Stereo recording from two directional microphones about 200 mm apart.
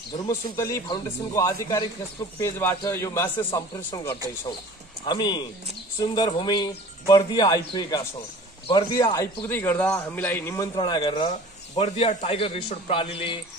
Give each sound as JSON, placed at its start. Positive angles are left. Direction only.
{"t": 0.3, "sound": "a man's voice", "side_deg": 15}
{"t": 10.7, "sound": "a man's voice", "side_deg": 25}